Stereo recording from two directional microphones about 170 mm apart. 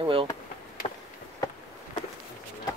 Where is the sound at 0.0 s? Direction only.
30° right (ahead or behind).